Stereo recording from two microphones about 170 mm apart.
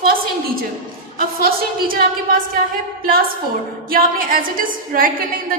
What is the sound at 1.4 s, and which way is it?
Speech, 60° right (ahead or behind).